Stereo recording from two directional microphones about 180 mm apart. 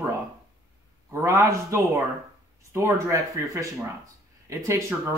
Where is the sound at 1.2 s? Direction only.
15° right (ahead or behind).